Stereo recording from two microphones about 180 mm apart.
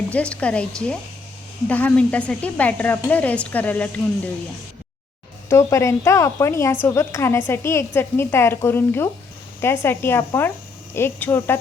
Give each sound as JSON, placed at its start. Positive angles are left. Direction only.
{"t": 0.1, "sound": "a woman's voice", "side_deg": 5}
{"t": 5.5, "sound": "speech", "side_deg": 15}